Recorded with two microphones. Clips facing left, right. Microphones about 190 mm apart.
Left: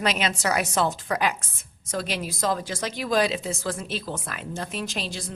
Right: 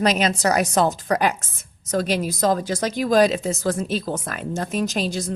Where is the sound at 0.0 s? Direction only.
40° right (ahead or behind).